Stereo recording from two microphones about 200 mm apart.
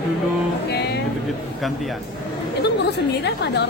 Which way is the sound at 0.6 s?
55° left (ahead or behind).